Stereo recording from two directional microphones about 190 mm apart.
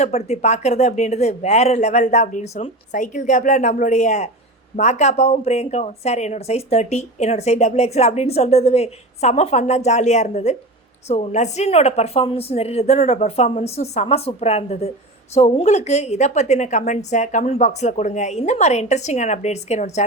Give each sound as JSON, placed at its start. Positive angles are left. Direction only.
{"t": 0.0, "sound": "speech", "side_deg": 35}